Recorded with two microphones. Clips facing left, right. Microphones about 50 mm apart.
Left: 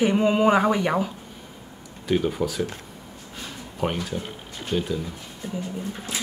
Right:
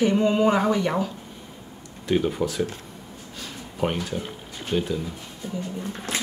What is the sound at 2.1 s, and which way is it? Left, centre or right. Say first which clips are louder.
Speech: even; centre.